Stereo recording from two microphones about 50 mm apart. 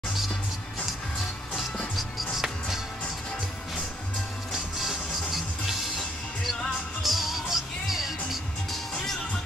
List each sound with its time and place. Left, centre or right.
2.0 s music: centre
4.5 s music: centre